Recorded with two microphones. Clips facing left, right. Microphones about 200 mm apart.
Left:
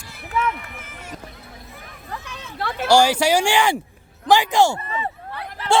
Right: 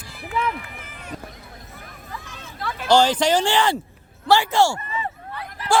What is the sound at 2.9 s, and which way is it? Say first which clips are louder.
Speech: left 1 dB; 10° left (ahead or behind).